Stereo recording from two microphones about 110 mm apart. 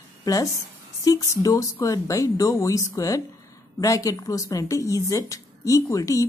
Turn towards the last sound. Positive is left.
turn(degrees=30)  # may be behind; listen again after turning